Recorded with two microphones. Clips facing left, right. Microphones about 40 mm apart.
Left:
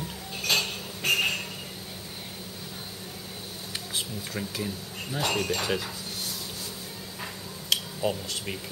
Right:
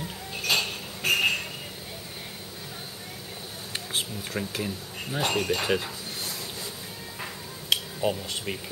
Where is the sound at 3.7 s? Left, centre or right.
Right.